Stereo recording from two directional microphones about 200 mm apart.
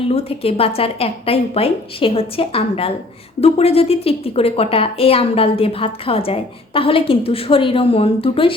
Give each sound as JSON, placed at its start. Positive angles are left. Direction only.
{"t": 0.1, "sound": "a woman's voice", "side_deg": 30}